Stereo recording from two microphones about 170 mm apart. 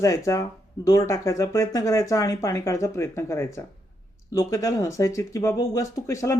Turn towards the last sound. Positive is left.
turn(degrees=20)  # may be behind; listen again after turning